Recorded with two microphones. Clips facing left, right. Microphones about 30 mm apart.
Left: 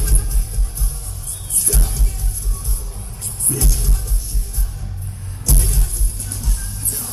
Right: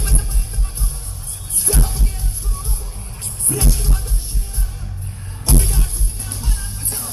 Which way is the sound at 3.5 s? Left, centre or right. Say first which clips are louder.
Right 3 dB; right.